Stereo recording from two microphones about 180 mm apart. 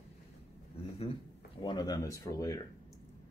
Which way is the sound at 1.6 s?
25° left (ahead or behind).